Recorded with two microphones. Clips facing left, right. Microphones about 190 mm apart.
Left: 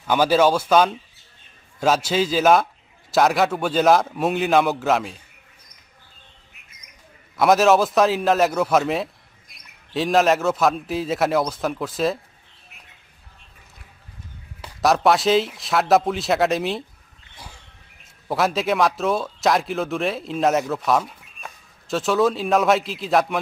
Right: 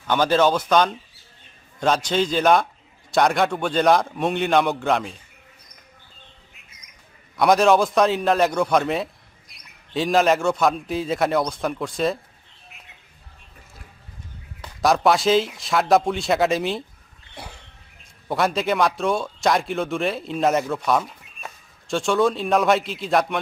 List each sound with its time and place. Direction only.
0.1 s speech: 10° left (ahead or behind)
7.3 s speech: centre (ahead or behind)
14.6 s speech: centre (ahead or behind)
17.4 s a sound: 65° right (ahead or behind)
18.3 s speech: centre (ahead or behind)